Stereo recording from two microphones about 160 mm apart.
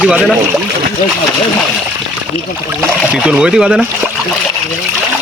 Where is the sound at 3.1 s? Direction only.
5° right (ahead or behind).